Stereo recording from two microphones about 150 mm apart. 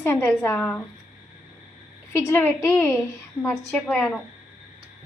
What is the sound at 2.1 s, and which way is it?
A woman's voice, 15° left (ahead or behind).